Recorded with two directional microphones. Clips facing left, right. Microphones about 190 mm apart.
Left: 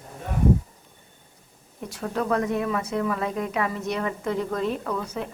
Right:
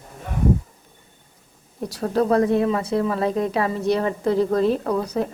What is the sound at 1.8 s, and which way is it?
A woman's voice, 35° right (ahead or behind).